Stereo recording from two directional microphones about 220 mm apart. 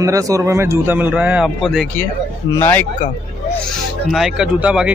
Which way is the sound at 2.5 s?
10° left (ahead or behind).